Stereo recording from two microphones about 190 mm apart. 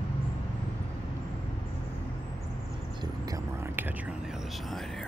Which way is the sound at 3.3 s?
10° right (ahead or behind).